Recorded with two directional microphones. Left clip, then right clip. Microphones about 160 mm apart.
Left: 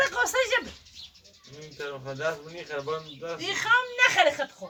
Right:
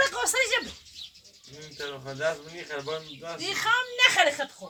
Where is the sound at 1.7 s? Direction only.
50° left (ahead or behind).